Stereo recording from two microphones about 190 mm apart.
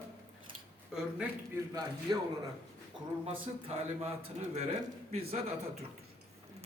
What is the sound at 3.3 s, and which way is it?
A man's voice, 35° right (ahead or behind).